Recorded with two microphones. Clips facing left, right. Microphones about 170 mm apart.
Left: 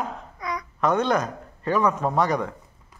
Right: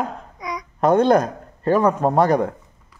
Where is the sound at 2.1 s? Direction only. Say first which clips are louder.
Right 6 dB; 50° right (ahead or behind).